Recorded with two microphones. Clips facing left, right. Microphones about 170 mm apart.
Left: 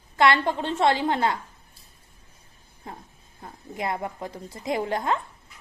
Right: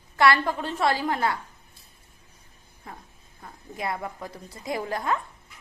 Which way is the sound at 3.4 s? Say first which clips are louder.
Left 2 dB; 25° left (ahead or behind).